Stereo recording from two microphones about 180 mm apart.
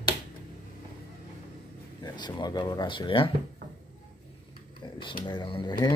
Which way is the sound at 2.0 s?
25° left (ahead or behind).